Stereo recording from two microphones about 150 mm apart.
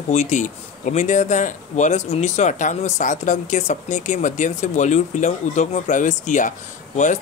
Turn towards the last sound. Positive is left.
turn(degrees=55)  # may be behind; listen again after turning